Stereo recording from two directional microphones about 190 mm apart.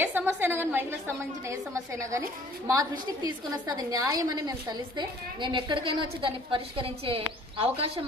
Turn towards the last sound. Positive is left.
turn(degrees=-30)  # may be behind; listen again after turning